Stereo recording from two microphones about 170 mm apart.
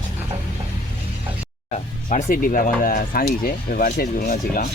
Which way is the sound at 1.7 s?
50° left (ahead or behind).